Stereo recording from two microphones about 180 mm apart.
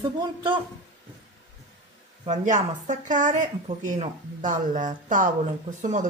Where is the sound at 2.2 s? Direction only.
40° right (ahead or behind).